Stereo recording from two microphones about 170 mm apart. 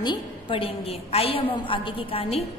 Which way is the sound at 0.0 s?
30° left (ahead or behind).